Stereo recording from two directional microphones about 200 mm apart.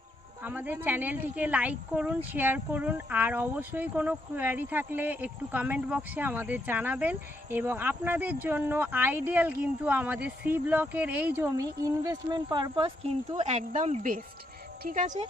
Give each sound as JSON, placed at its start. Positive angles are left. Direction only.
{"t": 0.4, "sound": "speech", "side_deg": -10}